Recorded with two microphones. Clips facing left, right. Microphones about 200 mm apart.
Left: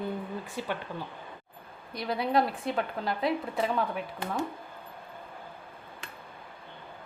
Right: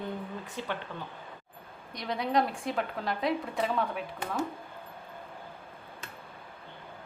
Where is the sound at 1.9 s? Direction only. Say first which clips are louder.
Left 2 dB; 5° left (ahead or behind).